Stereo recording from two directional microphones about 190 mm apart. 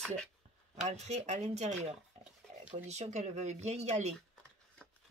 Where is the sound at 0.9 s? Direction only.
35° right (ahead or behind).